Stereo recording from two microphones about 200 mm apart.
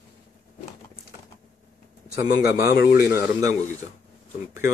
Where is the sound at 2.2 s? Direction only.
45° left (ahead or behind).